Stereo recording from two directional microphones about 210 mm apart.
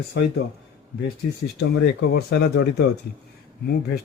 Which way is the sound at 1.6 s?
50° left (ahead or behind).